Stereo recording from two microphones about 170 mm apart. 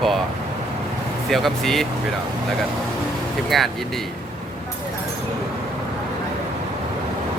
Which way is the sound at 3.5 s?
Centre (ahead or behind).